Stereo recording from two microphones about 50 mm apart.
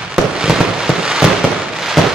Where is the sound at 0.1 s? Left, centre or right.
Centre.